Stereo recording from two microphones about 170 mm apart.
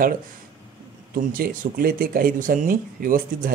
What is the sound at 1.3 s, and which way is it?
Speech, 55° right (ahead or behind).